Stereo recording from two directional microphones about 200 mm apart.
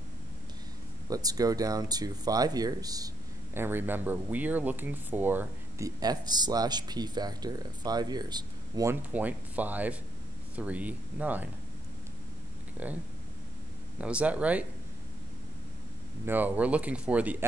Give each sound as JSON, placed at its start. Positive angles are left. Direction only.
{"t": 1.0, "sound": "speech", "side_deg": -20}
{"t": 12.7, "sound": "speech", "side_deg": -10}
{"t": 14.0, "sound": "speech", "side_deg": -5}
{"t": 16.3, "sound": "speech", "side_deg": -10}